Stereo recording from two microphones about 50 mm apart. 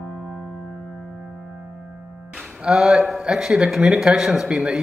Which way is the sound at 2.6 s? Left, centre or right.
Centre.